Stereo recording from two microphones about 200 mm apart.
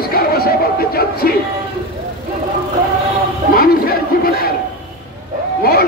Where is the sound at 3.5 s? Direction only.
50° left (ahead or behind).